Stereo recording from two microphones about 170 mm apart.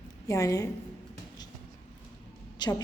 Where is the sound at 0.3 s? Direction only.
20° left (ahead or behind).